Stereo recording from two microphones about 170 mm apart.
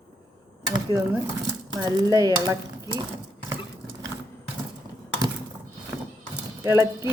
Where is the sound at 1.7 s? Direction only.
25° right (ahead or behind).